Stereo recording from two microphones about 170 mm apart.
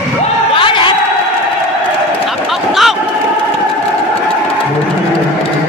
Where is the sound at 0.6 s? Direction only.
30° left (ahead or behind).